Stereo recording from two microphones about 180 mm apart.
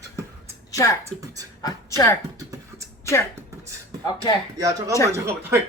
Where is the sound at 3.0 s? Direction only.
15° left (ahead or behind).